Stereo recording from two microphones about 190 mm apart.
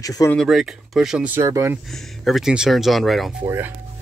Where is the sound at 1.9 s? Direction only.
Centre (ahead or behind).